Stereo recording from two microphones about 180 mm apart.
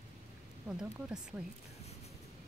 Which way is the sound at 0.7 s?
5° right (ahead or behind).